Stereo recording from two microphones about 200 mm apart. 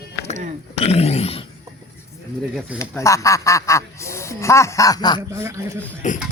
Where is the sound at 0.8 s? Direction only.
30° left (ahead or behind).